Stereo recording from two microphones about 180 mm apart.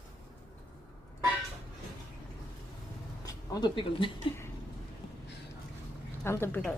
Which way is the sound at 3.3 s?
25° left (ahead or behind).